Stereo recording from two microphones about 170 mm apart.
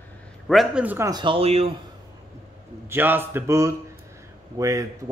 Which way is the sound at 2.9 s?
10° right (ahead or behind).